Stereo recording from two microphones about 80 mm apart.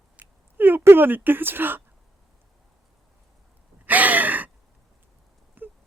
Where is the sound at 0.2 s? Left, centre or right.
Right.